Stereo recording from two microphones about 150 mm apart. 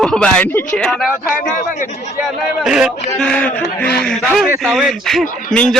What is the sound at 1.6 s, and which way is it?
Speech, 55° left (ahead or behind).